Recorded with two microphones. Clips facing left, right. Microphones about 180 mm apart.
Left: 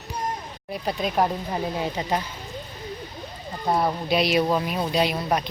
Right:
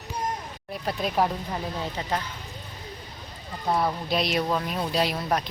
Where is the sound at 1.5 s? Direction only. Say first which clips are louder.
Left 4 dB; 15° left (ahead or behind).